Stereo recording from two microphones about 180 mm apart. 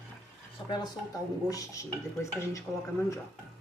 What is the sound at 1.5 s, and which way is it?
A woman's voice, 20° left (ahead or behind).